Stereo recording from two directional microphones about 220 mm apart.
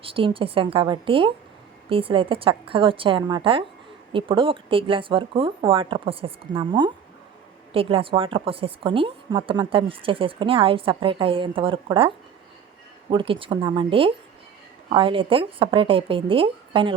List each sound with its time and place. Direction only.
0.0 s speech: 25° right (ahead or behind)